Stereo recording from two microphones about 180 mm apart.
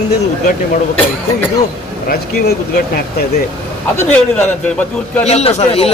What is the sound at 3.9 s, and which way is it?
A man's voice, 10° left (ahead or behind).